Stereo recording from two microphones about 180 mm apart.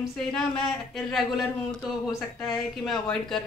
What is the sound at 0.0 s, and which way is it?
Speech, 5° left (ahead or behind).